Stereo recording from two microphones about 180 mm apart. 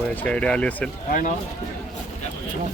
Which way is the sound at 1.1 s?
50° left (ahead or behind).